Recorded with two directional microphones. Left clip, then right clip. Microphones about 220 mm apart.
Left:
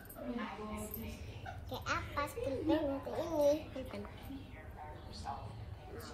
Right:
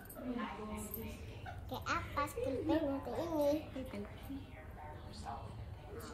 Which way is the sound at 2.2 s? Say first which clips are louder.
Even; centre (ahead or behind).